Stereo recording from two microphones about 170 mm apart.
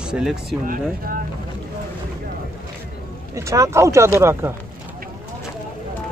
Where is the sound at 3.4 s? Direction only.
20° right (ahead or behind).